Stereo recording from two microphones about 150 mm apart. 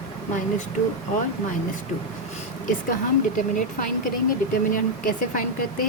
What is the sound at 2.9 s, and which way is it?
Speech, 65° left (ahead or behind).